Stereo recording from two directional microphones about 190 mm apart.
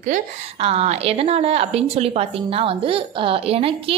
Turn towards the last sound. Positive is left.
turn(degrees=-30)  # may be behind; listen again after turning